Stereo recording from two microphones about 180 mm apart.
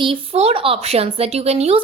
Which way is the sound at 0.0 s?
30° right (ahead or behind).